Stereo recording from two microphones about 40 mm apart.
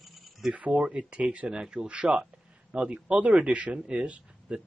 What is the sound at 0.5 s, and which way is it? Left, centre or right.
Speech, right.